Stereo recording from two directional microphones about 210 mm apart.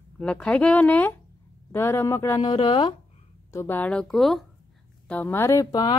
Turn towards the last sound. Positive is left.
turn(degrees=20)  # may be behind; listen again after turning